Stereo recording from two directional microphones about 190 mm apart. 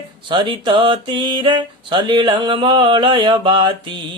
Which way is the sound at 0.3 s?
25° right (ahead or behind).